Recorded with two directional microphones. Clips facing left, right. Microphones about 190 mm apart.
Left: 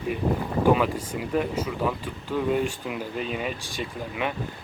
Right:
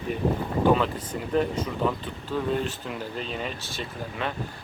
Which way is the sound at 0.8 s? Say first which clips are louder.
Left 2 dB; 10° left (ahead or behind).